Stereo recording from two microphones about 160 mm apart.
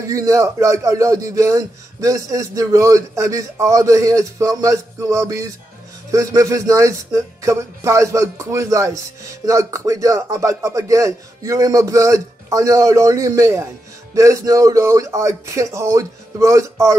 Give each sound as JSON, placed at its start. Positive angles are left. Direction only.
{"t": 0.0, "sound": "speech", "side_deg": -20}